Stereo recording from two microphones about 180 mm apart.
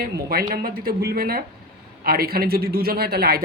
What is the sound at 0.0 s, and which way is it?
Speech, 55° right (ahead or behind).